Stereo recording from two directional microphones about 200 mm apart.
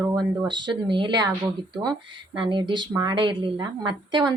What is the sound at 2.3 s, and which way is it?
Speech, 25° right (ahead or behind).